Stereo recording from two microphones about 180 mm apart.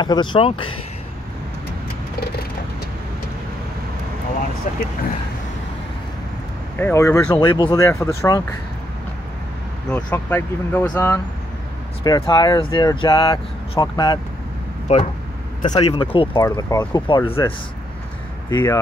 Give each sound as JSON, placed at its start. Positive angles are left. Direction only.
{"t": 0.0, "sound": "speech", "side_deg": 25}
{"t": 4.7, "sound": "speech", "side_deg": 45}
{"t": 6.8, "sound": "speech", "side_deg": 15}
{"t": 7.3, "sound": "speech", "side_deg": 25}
{"t": 9.8, "sound": "speech", "side_deg": 10}
{"t": 12.0, "sound": "speech", "side_deg": 25}
{"t": 14.9, "sound": "speech", "side_deg": 40}
{"t": 15.8, "sound": "speech", "side_deg": 30}
{"t": 18.5, "sound": "speech", "side_deg": 25}